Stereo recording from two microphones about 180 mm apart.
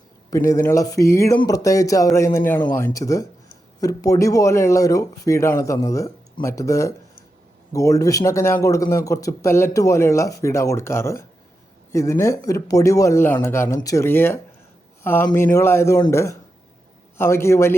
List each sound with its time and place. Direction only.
0.3 s speech: 15° left (ahead or behind)